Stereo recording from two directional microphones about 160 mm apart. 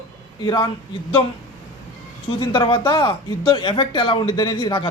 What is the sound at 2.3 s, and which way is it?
Speech, 30° left (ahead or behind).